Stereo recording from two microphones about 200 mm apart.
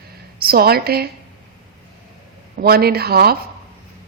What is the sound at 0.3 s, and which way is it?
Speech, 50° right (ahead or behind).